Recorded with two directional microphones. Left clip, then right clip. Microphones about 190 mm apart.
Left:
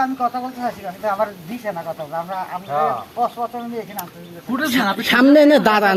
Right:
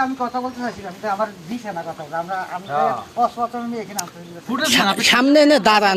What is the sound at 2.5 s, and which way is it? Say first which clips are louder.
Speech: left 1 dB; centre (ahead or behind).